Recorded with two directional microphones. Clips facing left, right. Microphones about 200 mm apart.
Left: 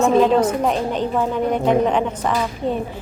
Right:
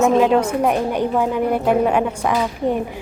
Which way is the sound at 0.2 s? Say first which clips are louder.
Even; 10° right (ahead or behind).